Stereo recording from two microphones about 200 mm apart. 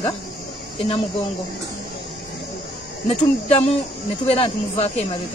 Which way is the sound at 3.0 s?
30° left (ahead or behind).